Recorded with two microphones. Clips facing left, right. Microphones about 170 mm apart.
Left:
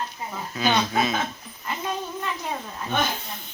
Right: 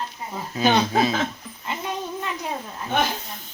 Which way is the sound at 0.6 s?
35° right (ahead or behind).